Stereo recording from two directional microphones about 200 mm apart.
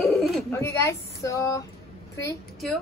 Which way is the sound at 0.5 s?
15° left (ahead or behind).